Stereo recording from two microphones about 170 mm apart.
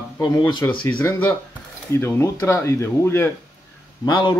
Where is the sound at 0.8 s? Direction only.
15° left (ahead or behind).